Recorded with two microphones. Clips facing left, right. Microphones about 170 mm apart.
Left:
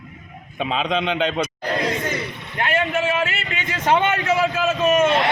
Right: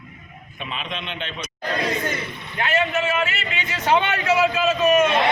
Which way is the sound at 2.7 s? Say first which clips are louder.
Left 1 dB; 50° left (ahead or behind).